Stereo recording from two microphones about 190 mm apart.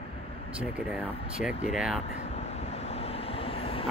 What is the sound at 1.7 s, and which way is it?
Speech, centre (ahead or behind).